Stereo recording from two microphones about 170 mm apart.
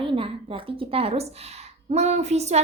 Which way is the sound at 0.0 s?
30° right (ahead or behind).